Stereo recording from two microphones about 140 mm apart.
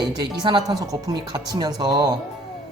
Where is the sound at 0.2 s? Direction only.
30° right (ahead or behind).